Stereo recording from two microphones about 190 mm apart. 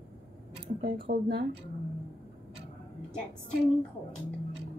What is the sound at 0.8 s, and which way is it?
Speech, 50° right (ahead or behind).